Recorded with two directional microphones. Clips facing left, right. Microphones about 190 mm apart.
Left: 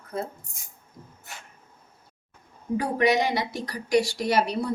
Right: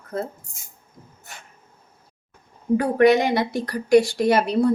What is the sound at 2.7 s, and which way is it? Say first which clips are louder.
A woman's voice: right 7 dB; 55° right (ahead or behind).